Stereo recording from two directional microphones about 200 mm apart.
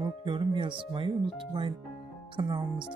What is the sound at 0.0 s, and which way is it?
Speech, 25° right (ahead or behind).